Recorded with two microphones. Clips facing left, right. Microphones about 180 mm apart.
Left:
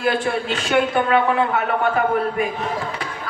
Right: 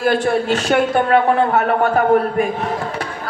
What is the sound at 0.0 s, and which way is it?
A woman's voice, 45° right (ahead or behind).